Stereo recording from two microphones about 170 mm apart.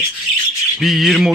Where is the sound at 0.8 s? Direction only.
Centre (ahead or behind).